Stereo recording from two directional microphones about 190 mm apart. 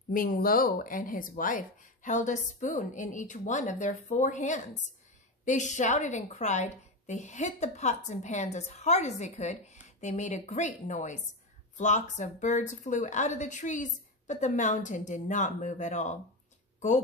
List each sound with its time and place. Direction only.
0.1 s a woman's voice: 50° left (ahead or behind)